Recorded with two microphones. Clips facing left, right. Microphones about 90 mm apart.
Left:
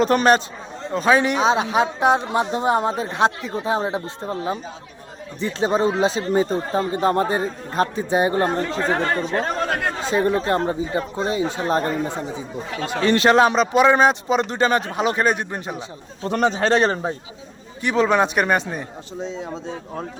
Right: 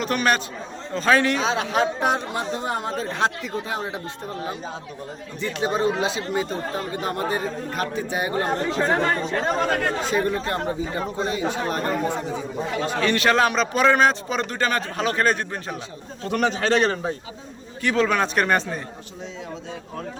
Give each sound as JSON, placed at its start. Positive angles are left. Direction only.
{"t": 0.0, "sound": "a man's voice", "side_deg": 35}
{"t": 0.9, "sound": "a man's voice", "side_deg": 15}
{"t": 9.6, "sound": "speech", "side_deg": 5}
{"t": 10.0, "sound": "a man's voice", "side_deg": 25}
{"t": 16.3, "sound": "a man's voice", "side_deg": 30}